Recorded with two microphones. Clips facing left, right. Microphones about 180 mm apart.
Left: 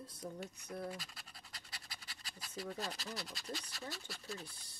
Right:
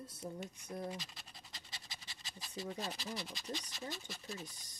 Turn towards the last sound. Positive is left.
turn(degrees=-15)  # may be behind; listen again after turning